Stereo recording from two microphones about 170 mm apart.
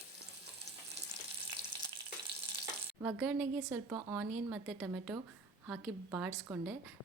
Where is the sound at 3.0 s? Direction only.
10° right (ahead or behind).